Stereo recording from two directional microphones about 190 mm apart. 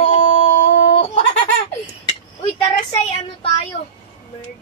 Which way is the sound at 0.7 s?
65° left (ahead or behind).